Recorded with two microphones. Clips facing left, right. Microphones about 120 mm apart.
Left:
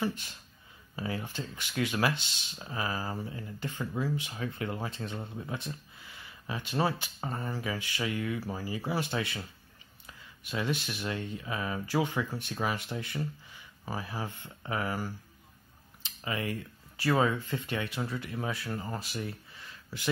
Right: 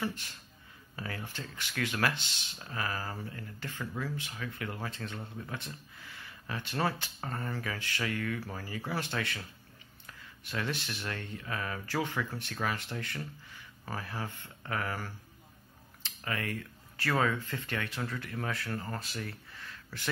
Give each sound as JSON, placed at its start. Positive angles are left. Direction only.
{"t": 0.0, "sound": "speech", "side_deg": 15}